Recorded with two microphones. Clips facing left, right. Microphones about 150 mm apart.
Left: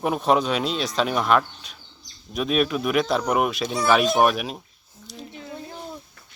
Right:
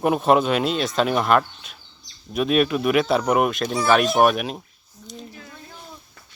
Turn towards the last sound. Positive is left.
turn(degrees=25)  # may be behind; listen again after turning